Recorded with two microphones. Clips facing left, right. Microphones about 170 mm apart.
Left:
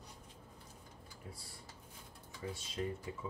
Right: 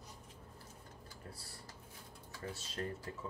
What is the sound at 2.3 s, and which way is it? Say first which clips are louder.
Speech: left 2 dB; 5° left (ahead or behind).